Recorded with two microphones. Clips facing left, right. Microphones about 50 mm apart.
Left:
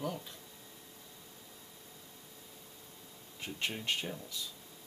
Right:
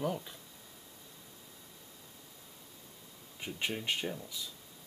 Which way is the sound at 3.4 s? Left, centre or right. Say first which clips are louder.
Right 2 dB; centre.